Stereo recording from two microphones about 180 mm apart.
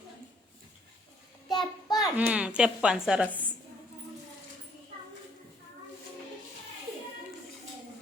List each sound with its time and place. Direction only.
1.5 s child singing: 20° left (ahead or behind)
2.0 s a woman's voice: 5° right (ahead or behind)